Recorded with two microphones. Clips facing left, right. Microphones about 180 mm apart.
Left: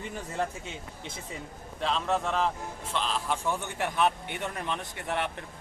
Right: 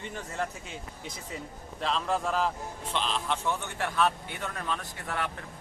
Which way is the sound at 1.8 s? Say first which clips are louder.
Left 1 dB; centre (ahead or behind).